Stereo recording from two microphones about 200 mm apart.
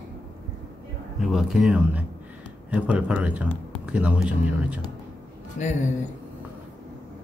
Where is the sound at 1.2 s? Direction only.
Centre (ahead or behind).